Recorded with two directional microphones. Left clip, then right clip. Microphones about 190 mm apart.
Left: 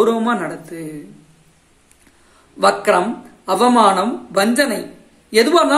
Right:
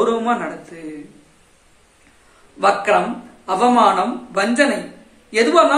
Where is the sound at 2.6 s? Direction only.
50° left (ahead or behind).